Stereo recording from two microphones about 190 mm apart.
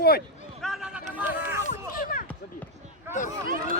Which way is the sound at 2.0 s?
45° left (ahead or behind).